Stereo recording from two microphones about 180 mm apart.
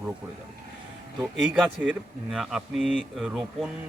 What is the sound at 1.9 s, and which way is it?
Speech, centre (ahead or behind).